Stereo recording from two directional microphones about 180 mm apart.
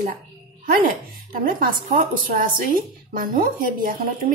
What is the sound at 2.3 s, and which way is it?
A woman's voice, 50° right (ahead or behind).